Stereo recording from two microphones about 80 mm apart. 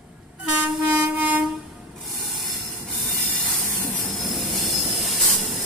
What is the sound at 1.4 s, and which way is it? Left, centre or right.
Train, centre.